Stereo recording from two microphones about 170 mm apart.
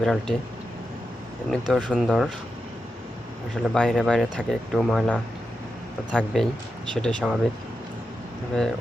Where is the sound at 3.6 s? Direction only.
Centre (ahead or behind).